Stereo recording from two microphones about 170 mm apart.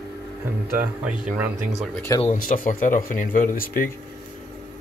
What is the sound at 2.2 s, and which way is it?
Speech, 55° left (ahead or behind).